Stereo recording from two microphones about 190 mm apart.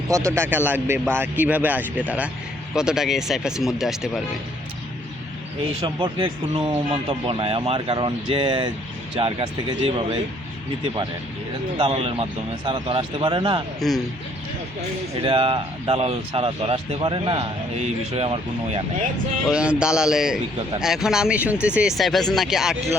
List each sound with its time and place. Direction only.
0.1 s a man's voice: 15° right (ahead or behind)
5.8 s speech: 25° right (ahead or behind)
11.8 s speech: 30° right (ahead or behind)
13.8 s speech: centre (ahead or behind)
15.2 s speech: 30° right (ahead or behind)
19.5 s speech: 5° right (ahead or behind)